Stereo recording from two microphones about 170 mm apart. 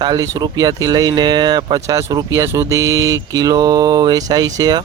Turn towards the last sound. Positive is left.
turn(degrees=-25)  # may be behind; listen again after turning